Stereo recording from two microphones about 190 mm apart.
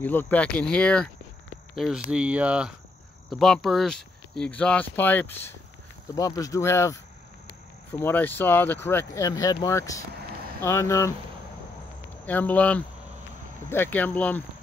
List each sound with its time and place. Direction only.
0.0 s speech: 10° left (ahead or behind)
12.3 s speech: 10° left (ahead or behind)